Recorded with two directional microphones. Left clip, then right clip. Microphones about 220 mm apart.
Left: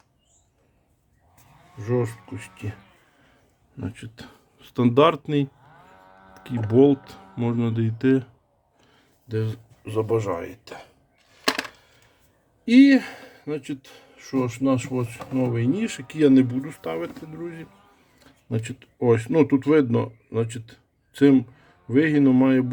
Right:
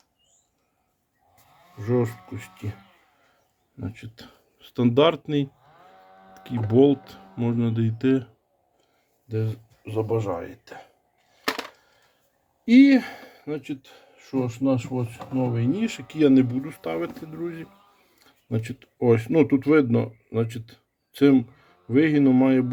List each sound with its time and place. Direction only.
1.8 s speech: centre (ahead or behind)
3.8 s speech: 15° left (ahead or behind)
6.1 s music: 50° right (ahead or behind)
6.3 s speech: 10° left (ahead or behind)
9.3 s speech: 20° left (ahead or behind)
12.6 s speech: 5° left (ahead or behind)
16.8 s speech: centre (ahead or behind)